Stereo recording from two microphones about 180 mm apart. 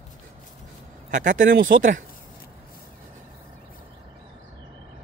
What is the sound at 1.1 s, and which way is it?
Speech, 45° right (ahead or behind).